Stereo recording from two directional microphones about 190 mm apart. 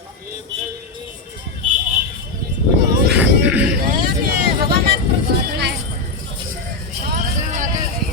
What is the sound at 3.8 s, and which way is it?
Vehicle, 55° right (ahead or behind).